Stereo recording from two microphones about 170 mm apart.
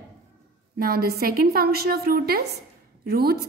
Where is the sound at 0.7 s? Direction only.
65° right (ahead or behind).